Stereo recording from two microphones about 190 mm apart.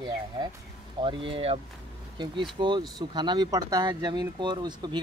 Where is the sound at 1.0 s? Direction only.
25° right (ahead or behind).